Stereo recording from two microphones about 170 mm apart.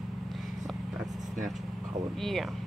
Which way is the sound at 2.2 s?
Centre (ahead or behind).